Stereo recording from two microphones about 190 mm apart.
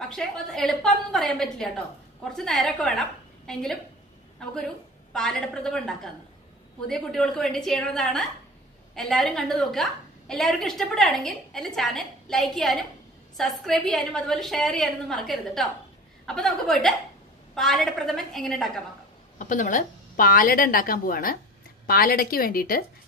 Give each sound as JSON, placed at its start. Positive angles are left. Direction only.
{"t": 0.1, "sound": "a woman's voice", "side_deg": 0}
{"t": 5.1, "sound": "a woman's voice", "side_deg": 5}
{"t": 19.3, "sound": "a woman's voice", "side_deg": 45}